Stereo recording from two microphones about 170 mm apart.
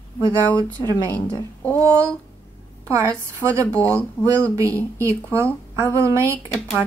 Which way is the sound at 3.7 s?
10° left (ahead or behind).